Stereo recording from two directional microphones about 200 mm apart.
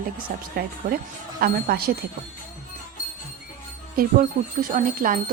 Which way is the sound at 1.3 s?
50° right (ahead or behind).